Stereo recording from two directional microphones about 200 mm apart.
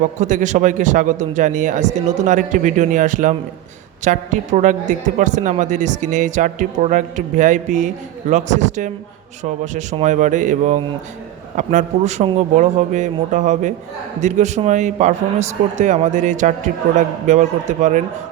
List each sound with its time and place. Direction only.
0.0 s a woman's voice: 40° right (ahead or behind)
10.0 s a woman's voice: 40° right (ahead or behind)